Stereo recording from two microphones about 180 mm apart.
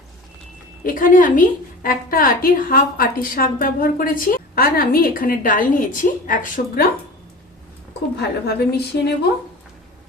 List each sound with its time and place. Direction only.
0.9 s a woman's voice: 50° left (ahead or behind)
8.2 s a woman's voice: 65° left (ahead or behind)